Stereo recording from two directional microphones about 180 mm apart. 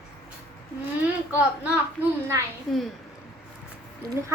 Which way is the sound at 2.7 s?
Centre (ahead or behind).